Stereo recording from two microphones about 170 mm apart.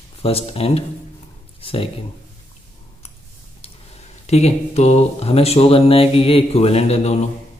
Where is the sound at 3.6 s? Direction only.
40° left (ahead or behind).